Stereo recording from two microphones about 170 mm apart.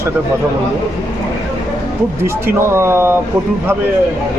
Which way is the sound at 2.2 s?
15° right (ahead or behind).